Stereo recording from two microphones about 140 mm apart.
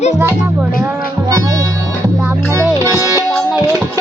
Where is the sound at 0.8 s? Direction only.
25° right (ahead or behind).